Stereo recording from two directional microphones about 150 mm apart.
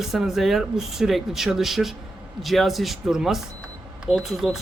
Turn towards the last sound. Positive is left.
turn(degrees=0)  # may be behind; listen again after turning